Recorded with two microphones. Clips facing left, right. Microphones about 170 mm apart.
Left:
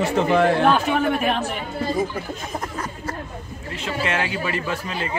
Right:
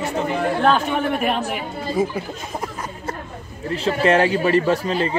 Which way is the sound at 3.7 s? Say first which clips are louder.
Right 8 dB; 35° right (ahead or behind).